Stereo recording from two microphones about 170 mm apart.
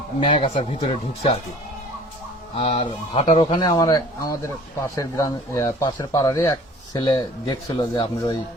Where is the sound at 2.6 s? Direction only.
30° left (ahead or behind).